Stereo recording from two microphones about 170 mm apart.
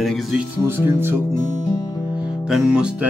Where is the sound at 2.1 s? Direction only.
5° right (ahead or behind).